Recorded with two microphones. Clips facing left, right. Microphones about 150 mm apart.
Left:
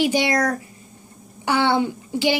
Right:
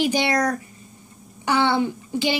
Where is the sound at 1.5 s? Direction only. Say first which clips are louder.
Left 1 dB; 15° left (ahead or behind).